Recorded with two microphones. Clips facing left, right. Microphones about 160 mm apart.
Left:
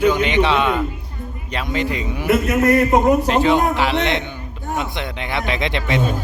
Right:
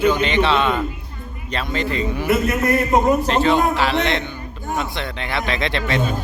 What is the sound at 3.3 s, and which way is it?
Speech, 15° left (ahead or behind).